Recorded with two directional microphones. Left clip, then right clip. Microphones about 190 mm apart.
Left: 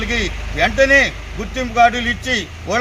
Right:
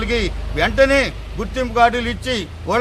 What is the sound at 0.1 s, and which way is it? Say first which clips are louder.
A man's voice: even; 30° right (ahead or behind).